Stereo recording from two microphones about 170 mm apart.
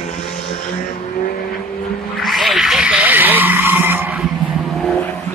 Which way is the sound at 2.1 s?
Centre (ahead or behind).